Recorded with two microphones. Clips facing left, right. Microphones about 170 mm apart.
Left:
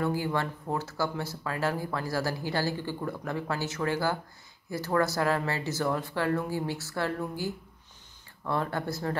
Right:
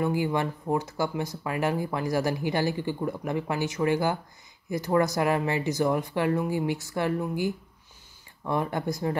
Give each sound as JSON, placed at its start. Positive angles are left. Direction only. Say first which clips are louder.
{"t": 0.0, "sound": "speech", "louder": "right 3 dB", "side_deg": -15}